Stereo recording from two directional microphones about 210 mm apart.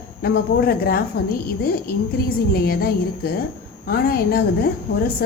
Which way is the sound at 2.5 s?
45° left (ahead or behind).